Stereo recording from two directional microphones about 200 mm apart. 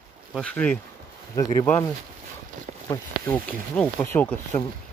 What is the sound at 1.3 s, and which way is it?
Speech, 15° left (ahead or behind).